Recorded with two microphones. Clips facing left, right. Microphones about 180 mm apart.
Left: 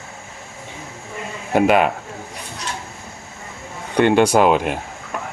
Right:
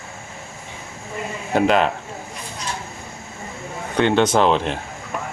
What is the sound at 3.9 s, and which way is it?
Speech, 10° left (ahead or behind).